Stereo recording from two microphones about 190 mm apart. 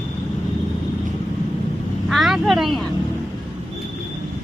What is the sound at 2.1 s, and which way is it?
Vehicle, centre (ahead or behind).